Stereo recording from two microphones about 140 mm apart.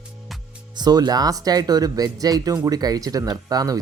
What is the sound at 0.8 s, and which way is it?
Speech, 30° right (ahead or behind).